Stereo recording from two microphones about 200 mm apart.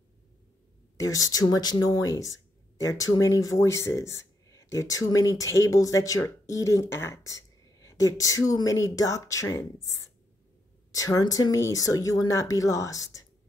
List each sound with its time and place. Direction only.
0.9 s speech: 15° left (ahead or behind)